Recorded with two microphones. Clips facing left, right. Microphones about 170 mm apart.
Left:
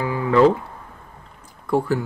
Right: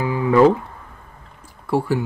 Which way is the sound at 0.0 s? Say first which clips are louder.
Right 2 dB; 20° right (ahead or behind).